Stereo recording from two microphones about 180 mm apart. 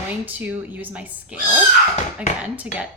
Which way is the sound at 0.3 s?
10° right (ahead or behind).